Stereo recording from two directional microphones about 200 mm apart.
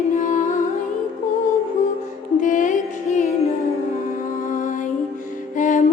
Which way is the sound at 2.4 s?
40° left (ahead or behind).